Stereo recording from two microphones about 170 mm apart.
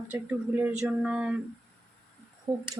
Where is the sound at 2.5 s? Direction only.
25° right (ahead or behind).